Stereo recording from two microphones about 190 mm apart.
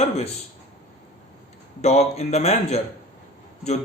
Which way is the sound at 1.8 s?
35° left (ahead or behind).